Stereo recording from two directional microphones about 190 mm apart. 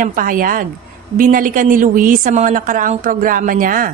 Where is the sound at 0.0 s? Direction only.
45° right (ahead or behind).